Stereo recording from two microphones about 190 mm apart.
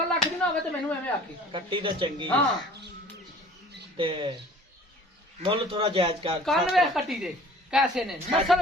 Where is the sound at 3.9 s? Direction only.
25° right (ahead or behind).